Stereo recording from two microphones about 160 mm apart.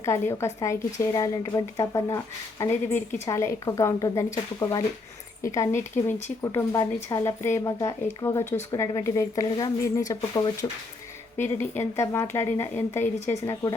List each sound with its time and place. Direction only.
0.0 s a woman's voice: 15° left (ahead or behind)